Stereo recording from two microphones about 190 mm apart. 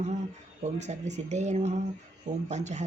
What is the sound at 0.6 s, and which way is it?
Speech, 35° right (ahead or behind).